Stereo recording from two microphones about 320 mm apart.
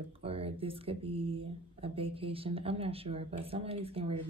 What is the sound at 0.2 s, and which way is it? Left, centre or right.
Speech, centre.